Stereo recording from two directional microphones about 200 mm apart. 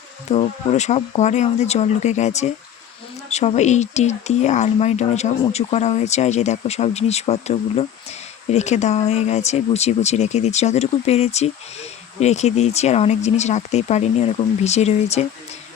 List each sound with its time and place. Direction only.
0.3 s speech: 35° left (ahead or behind)